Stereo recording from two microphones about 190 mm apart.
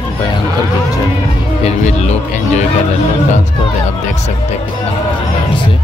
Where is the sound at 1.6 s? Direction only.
35° left (ahead or behind).